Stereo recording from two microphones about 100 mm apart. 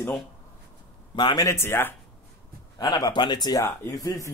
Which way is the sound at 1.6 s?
25° left (ahead or behind).